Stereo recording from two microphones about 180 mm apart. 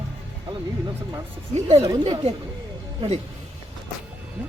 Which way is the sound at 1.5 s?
35° right (ahead or behind).